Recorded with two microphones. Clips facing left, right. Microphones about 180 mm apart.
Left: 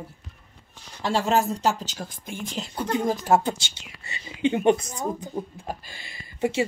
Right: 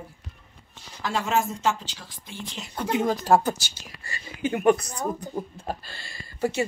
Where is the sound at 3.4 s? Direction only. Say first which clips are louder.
Right 1 dB; 25° left (ahead or behind).